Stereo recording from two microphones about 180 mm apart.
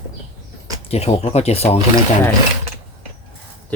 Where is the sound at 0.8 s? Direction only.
35° left (ahead or behind).